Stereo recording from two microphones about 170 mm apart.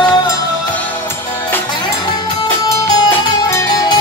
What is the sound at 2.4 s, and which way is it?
Music, 15° left (ahead or behind).